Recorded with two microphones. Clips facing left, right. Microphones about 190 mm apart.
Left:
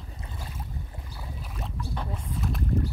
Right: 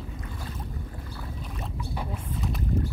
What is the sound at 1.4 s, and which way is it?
Boat, centre (ahead or behind).